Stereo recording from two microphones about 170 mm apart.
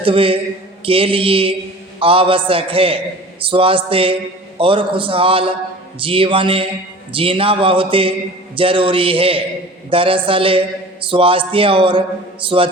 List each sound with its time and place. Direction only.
0.0 s a man's voice: 30° right (ahead or behind)